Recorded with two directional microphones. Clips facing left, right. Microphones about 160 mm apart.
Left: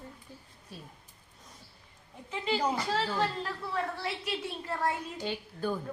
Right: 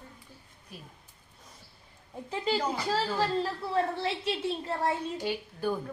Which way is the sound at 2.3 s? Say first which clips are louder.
Even; 35° right (ahead or behind).